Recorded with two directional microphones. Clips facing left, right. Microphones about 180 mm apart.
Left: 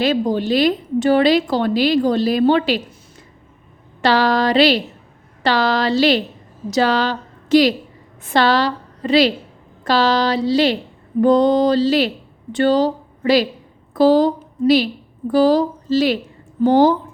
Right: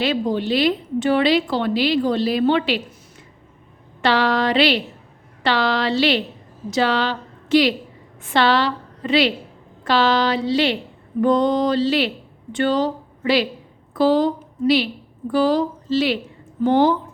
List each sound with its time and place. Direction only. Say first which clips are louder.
0.0 s a woman's voice: left 3 dB; 40° left (ahead or behind)
4.0 s a woman's voice: left 3 dB; 40° left (ahead or behind)